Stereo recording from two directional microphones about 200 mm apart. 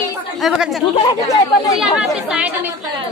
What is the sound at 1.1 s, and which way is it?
Speech, 15° left (ahead or behind).